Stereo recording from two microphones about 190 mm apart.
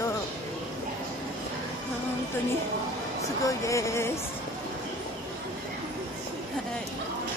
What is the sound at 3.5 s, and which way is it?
Speech, 15° left (ahead or behind).